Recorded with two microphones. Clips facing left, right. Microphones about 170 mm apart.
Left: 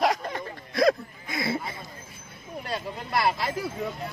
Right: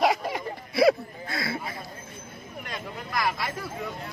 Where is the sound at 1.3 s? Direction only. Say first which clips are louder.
Left 3 dB; 20° left (ahead or behind).